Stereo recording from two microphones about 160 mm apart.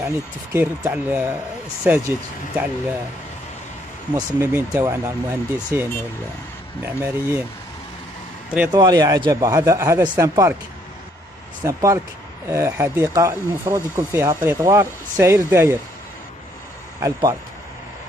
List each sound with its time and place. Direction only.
0.0 s speech: 15° right (ahead or behind)
4.1 s speech: 15° right (ahead or behind)
8.7 s speech: 25° right (ahead or behind)
11.6 s speech: 20° right (ahead or behind)
17.0 s speech: 20° right (ahead or behind)